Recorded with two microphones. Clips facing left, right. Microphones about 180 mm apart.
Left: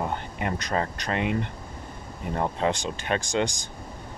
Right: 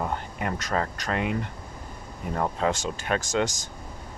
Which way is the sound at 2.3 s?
25° left (ahead or behind).